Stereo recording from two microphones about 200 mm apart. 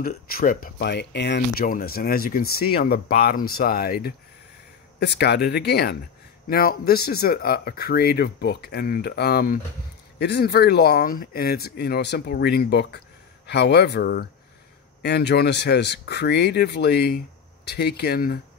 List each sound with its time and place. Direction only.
0.0 s speech: 50° left (ahead or behind)